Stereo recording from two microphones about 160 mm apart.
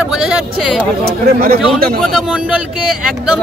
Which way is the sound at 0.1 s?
5° right (ahead or behind).